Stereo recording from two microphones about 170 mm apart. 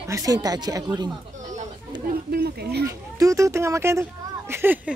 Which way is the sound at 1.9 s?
25° right (ahead or behind).